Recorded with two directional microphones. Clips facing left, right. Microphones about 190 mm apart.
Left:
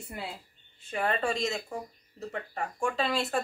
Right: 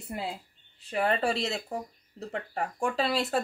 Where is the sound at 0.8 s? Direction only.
35° right (ahead or behind).